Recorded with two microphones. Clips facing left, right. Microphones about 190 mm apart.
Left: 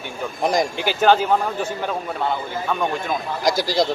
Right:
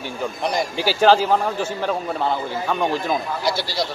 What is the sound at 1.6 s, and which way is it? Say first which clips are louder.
Speech: right 2 dB; centre (ahead or behind).